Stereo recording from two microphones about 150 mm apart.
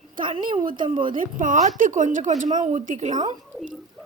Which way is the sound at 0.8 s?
35° right (ahead or behind).